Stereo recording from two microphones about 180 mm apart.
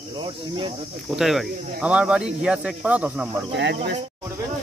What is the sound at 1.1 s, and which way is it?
Speech, centre (ahead or behind).